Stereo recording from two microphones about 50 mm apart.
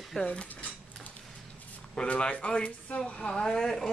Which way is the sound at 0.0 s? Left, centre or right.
Centre.